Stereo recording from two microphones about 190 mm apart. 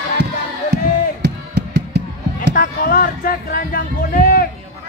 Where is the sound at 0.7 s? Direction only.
65° right (ahead or behind).